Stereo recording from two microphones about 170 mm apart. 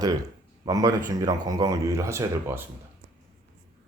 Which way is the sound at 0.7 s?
20° right (ahead or behind).